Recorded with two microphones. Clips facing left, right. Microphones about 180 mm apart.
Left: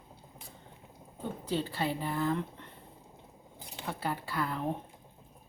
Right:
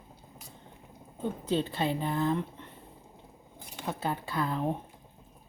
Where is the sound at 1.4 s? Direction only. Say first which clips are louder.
Right 3 dB; 25° right (ahead or behind).